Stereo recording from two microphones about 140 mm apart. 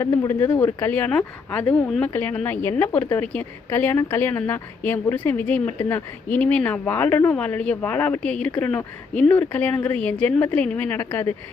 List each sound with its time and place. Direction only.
0.0 s a woman's voice: 20° left (ahead or behind)